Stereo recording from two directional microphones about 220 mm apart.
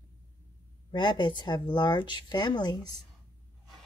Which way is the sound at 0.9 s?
20° left (ahead or behind).